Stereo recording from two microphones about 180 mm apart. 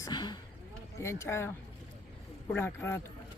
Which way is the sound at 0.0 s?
25° left (ahead or behind).